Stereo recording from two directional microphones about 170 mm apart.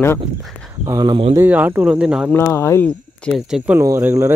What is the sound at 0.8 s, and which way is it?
Speech, 20° right (ahead or behind).